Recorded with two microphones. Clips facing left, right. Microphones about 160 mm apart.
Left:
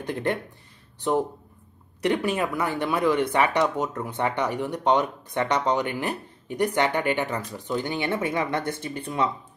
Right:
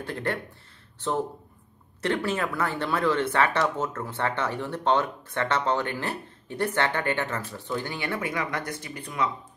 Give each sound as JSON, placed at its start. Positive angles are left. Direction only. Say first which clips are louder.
{"t": 0.0, "sound": "speech", "louder": "left 3 dB", "side_deg": 20}
{"t": 2.0, "sound": "speech", "louder": "left 3 dB", "side_deg": 15}